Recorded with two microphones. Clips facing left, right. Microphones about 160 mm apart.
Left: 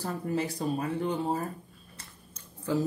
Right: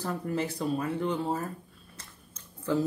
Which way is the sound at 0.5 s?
35° left (ahead or behind).